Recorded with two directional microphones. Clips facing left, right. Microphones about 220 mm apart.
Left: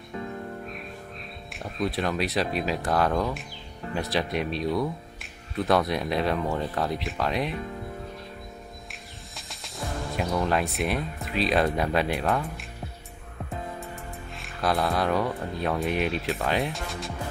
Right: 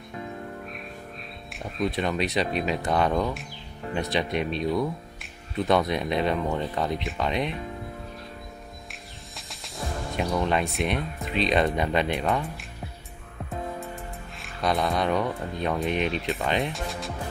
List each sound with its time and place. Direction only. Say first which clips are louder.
1.5 s speech: right 1 dB; centre (ahead or behind)
9.3 s music: even; centre (ahead or behind)
10.1 s speech: right 1 dB; centre (ahead or behind)
14.3 s speech: even; centre (ahead or behind)